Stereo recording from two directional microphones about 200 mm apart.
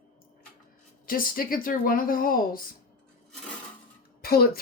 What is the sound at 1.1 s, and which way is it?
A woman's voice, 45° left (ahead or behind).